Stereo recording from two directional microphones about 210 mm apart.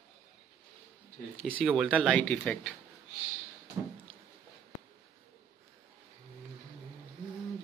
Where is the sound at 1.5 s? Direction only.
5° right (ahead or behind).